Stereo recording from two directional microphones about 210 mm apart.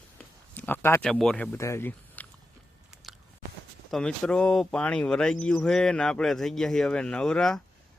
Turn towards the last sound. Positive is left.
turn(degrees=5)  # may be behind; listen again after turning